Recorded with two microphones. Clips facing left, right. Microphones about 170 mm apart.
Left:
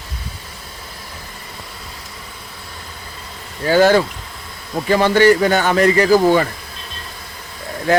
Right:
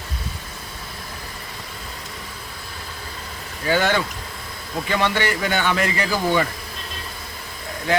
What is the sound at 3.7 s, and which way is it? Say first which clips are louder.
Speech: left 8 dB; 40° left (ahead or behind).